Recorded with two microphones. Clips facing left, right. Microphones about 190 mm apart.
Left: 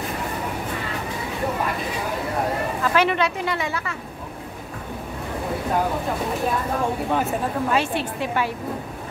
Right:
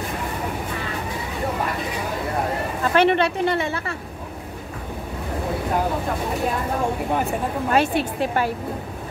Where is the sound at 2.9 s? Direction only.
30° right (ahead or behind).